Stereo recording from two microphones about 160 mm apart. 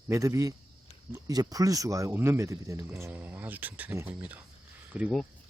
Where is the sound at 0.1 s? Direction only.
20° right (ahead or behind).